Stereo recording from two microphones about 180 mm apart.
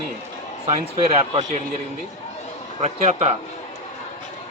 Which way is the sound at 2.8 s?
40° right (ahead or behind).